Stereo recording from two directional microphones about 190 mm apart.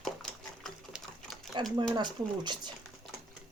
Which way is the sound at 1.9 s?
25° right (ahead or behind).